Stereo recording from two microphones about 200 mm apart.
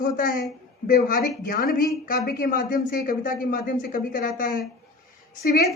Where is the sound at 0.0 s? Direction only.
45° left (ahead or behind).